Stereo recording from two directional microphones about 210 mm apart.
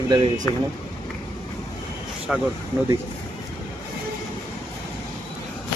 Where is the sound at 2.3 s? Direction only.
Centre (ahead or behind).